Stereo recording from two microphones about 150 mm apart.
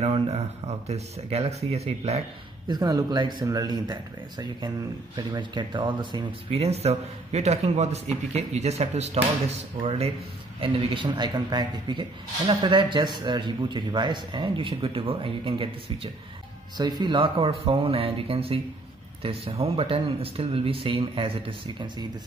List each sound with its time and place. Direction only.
0.0 s speech: 45° right (ahead or behind)
2.7 s speech: 25° right (ahead or behind)
6.5 s speech: 45° right (ahead or behind)